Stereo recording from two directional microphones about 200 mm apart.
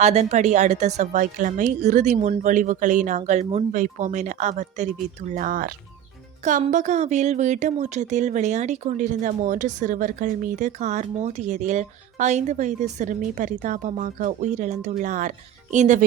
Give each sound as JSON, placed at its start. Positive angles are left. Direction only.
{"t": 0.0, "sound": "speech", "side_deg": -35}